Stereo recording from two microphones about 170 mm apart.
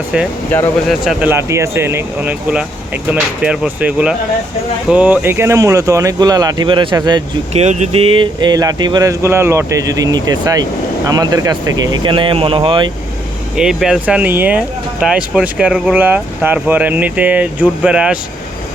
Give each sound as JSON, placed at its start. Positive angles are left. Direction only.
{"t": 0.9, "sound": "speech", "side_deg": 0}
{"t": 1.3, "sound": "speech", "side_deg": -15}
{"t": 7.5, "sound": "speech", "side_deg": -40}
{"t": 13.6, "sound": "speech", "side_deg": -5}